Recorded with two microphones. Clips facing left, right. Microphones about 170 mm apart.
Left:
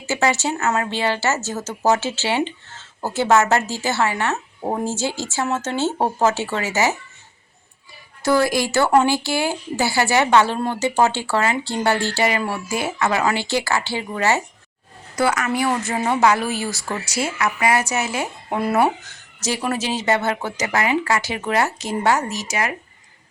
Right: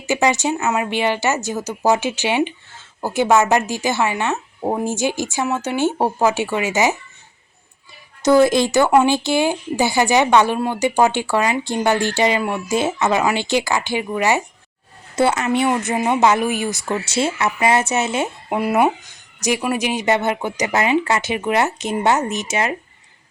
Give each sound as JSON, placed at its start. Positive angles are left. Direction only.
{"t": 0.0, "sound": "speech", "side_deg": -15}
{"t": 8.2, "sound": "speech", "side_deg": -20}
{"t": 15.1, "sound": "speech", "side_deg": -25}
{"t": 18.4, "sound": "speech", "side_deg": -10}